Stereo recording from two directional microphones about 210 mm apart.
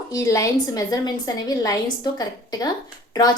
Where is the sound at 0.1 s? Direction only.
15° left (ahead or behind).